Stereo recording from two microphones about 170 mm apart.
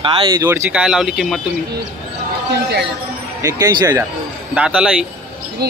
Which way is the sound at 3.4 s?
20° right (ahead or behind).